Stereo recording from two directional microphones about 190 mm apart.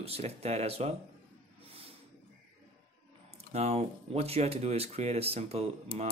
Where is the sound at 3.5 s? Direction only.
35° right (ahead or behind).